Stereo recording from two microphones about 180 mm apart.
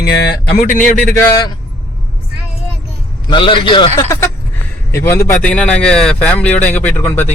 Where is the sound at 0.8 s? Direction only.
45° left (ahead or behind).